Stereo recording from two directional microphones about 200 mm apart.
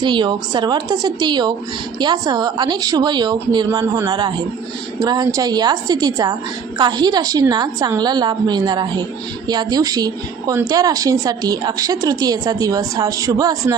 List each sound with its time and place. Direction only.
0.0 s a woman's voice: 25° right (ahead or behind)